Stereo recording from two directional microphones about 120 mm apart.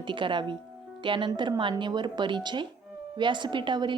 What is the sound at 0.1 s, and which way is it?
A woman's voice, 45° right (ahead or behind).